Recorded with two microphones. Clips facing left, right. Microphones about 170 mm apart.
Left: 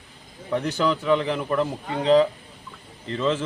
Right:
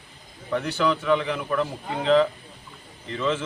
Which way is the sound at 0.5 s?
30° left (ahead or behind).